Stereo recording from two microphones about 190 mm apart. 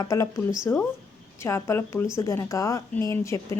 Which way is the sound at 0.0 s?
15° left (ahead or behind).